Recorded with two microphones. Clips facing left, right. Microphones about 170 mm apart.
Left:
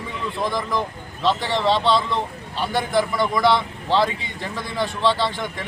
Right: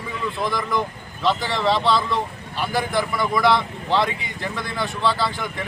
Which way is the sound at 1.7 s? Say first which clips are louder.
Even; centre (ahead or behind).